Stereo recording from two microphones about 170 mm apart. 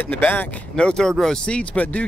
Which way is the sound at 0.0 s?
10° left (ahead or behind).